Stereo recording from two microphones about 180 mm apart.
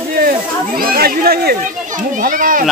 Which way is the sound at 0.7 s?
55° right (ahead or behind).